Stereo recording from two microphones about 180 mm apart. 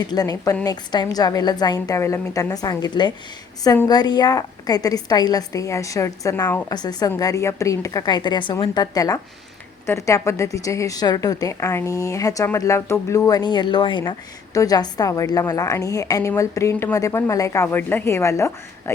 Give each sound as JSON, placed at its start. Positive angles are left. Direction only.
{"t": 0.0, "sound": "a woman's voice", "side_deg": 20}